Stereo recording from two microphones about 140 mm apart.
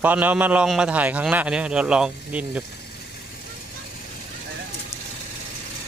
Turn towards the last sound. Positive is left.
turn(degrees=20)  # may be behind; listen again after turning